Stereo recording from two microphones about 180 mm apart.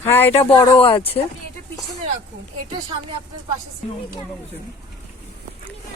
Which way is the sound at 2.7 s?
25° right (ahead or behind).